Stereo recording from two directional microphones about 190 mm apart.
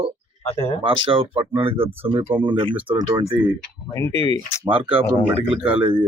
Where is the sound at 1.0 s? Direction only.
30° right (ahead or behind).